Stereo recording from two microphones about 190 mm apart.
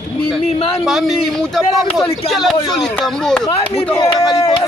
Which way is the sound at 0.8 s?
Centre (ahead or behind).